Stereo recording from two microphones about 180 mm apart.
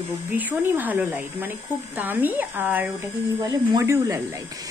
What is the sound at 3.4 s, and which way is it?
Speech, 20° right (ahead or behind).